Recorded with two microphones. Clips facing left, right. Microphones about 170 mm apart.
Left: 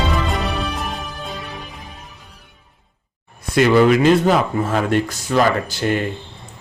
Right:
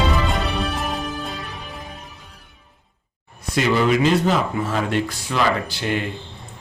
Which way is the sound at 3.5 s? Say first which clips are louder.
Left 5 dB; 55° left (ahead or behind).